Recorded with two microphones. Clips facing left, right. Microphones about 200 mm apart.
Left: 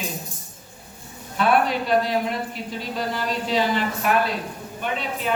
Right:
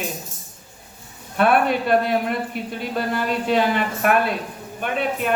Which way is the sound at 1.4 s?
55° right (ahead or behind).